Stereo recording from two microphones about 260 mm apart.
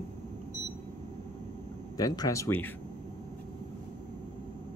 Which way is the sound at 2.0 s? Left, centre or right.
Centre.